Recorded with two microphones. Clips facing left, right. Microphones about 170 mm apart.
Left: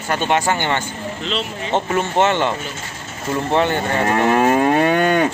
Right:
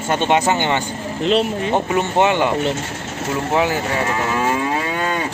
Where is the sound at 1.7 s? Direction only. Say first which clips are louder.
Left 1 dB; 15° right (ahead or behind).